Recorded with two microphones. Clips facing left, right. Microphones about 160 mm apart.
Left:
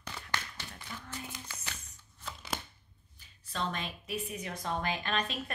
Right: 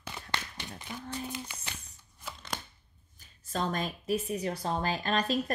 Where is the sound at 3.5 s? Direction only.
40° right (ahead or behind).